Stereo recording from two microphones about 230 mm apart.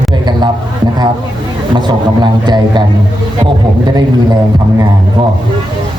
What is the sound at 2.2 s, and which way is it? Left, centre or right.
A man's voice, centre.